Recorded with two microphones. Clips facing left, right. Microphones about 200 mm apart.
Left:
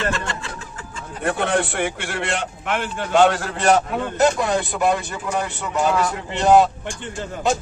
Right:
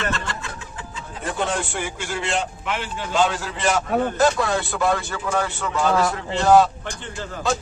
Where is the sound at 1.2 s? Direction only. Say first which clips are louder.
Left 5 dB; 65° left (ahead or behind).